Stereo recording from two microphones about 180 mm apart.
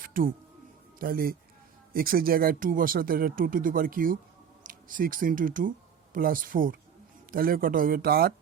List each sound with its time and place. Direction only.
0.0 s music: 50° right (ahead or behind)
0.9 s speech: 55° right (ahead or behind)